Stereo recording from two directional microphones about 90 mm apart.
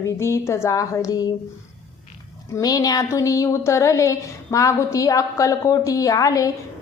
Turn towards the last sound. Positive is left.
turn(degrees=40)  # may be behind; listen again after turning